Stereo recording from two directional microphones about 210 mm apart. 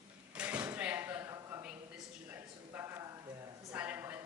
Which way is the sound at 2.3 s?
10° right (ahead or behind).